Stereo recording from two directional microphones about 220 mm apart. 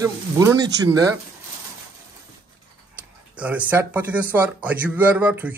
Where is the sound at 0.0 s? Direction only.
15° right (ahead or behind).